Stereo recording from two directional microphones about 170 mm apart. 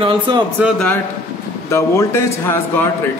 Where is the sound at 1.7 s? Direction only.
15° left (ahead or behind).